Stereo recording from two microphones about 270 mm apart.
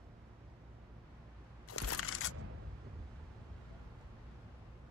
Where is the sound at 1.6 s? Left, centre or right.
Left.